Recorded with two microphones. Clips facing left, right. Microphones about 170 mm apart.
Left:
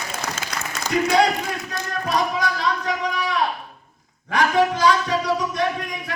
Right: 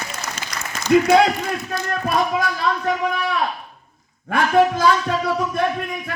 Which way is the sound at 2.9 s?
55° right (ahead or behind).